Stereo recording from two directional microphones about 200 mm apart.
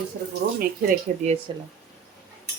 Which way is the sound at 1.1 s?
40° right (ahead or behind).